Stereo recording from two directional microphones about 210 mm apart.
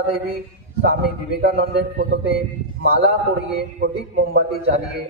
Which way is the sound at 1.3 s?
50° right (ahead or behind).